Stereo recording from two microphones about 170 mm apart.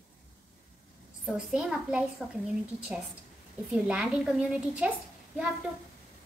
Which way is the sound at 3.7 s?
5° right (ahead or behind).